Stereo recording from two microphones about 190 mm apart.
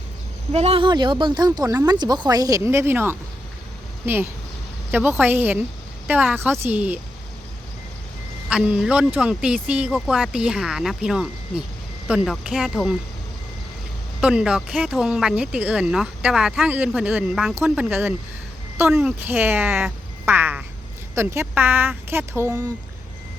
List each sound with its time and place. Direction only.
0.5 s speech: 35° right (ahead or behind); by 7.0 s 10° right (ahead or behind)
8.4 s speech: 5° right (ahead or behind)
14.2 s speech: 5° right (ahead or behind)